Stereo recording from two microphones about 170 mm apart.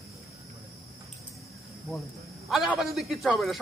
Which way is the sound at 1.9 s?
Centre (ahead or behind).